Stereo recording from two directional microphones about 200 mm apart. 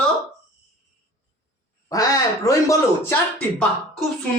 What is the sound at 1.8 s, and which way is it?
Speech, 15° left (ahead or behind).